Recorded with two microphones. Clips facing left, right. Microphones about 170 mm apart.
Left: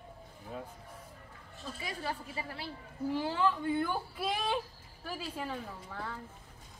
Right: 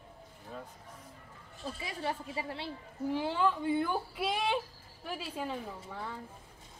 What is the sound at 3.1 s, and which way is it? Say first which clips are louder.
Speech: right 1 dB; 15° right (ahead or behind).